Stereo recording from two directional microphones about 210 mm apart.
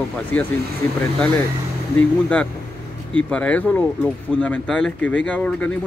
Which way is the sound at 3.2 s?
5° left (ahead or behind).